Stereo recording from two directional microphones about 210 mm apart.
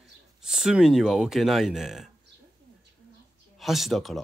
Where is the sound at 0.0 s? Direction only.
Centre (ahead or behind).